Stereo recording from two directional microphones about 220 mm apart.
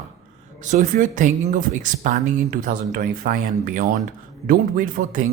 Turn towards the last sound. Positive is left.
turn(degrees=-35)  # may be behind; listen again after turning